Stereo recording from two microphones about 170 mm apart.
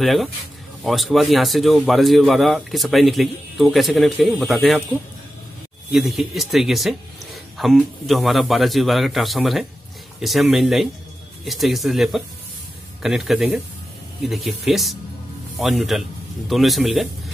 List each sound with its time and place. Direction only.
0.0 s speech: centre (ahead or behind)
5.9 s speech: centre (ahead or behind)